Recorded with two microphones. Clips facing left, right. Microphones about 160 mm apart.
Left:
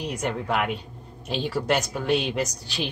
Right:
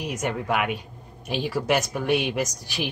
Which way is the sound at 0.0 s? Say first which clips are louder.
Even; 5° right (ahead or behind).